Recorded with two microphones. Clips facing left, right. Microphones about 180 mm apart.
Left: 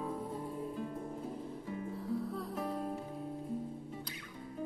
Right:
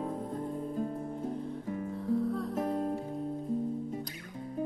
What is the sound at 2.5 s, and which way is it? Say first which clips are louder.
Music: right 5 dB; 45° right (ahead or behind).